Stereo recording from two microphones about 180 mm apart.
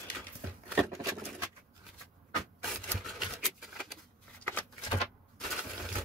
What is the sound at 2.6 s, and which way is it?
Rub, centre (ahead or behind).